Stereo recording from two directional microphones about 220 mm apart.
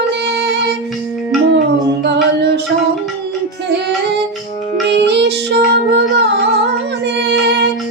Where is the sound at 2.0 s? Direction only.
50° right (ahead or behind).